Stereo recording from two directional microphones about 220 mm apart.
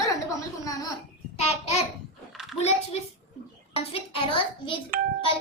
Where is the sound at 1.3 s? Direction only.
30° left (ahead or behind).